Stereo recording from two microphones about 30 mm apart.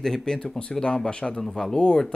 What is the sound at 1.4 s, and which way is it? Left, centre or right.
Speech, centre.